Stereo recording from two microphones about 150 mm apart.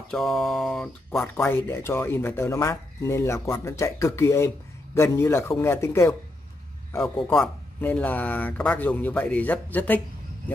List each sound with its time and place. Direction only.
0.1 s speech: centre (ahead or behind); by 6.1 s 20° left (ahead or behind)
7.2 s speech: 5° left (ahead or behind)